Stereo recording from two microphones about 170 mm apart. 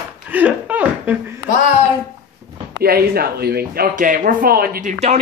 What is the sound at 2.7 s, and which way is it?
Speech, 70° right (ahead or behind).